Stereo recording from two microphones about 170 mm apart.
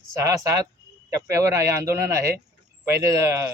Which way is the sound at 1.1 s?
20° right (ahead or behind).